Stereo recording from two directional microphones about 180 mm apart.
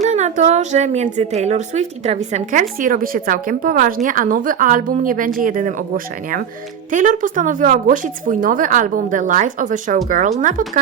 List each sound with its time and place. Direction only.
0.0 s a woman's voice: 40° right (ahead or behind)
6.9 s a woman's voice: 45° right (ahead or behind)